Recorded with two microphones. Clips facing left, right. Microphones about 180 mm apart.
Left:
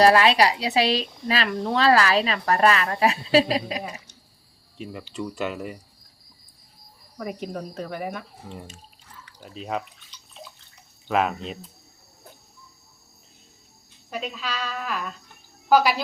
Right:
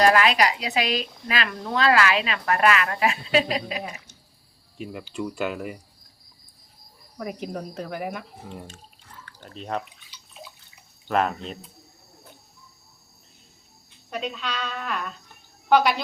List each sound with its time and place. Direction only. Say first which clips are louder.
0.0 s speech: left 2 dB; 30° left (ahead or behind)
4.8 s speech: right 1 dB; centre (ahead or behind)
7.2 s speech: even; centre (ahead or behind)
9.2 s drip: left 1 dB; 5° left (ahead or behind)
11.1 s speech: even; 5° left (ahead or behind)
14.1 s speech: right 1 dB; centre (ahead or behind)